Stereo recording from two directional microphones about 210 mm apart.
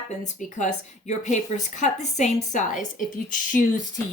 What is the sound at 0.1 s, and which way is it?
Speech, 35° left (ahead or behind).